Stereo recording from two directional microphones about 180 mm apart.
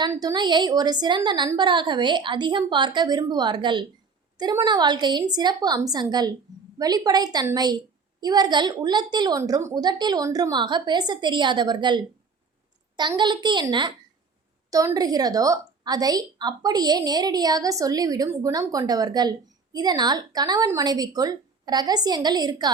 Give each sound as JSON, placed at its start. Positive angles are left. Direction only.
{"t": 0.1, "sound": "a woman's voice", "side_deg": -20}